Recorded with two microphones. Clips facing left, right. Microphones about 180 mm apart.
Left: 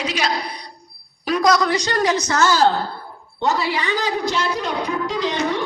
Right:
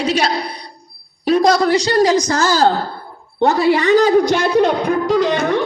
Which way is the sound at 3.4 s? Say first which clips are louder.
Right 8 dB; 55° right (ahead or behind).